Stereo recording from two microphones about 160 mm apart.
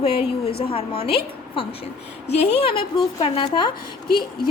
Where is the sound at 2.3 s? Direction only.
35° left (ahead or behind).